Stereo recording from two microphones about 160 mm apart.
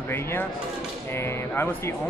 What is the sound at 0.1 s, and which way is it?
Speech, 15° left (ahead or behind).